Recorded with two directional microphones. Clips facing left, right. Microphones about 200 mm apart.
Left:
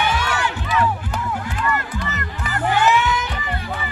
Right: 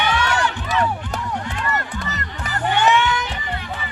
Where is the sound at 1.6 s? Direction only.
40° right (ahead or behind).